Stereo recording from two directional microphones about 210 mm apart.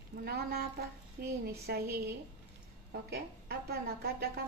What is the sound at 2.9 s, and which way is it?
A woman's voice, 50° right (ahead or behind).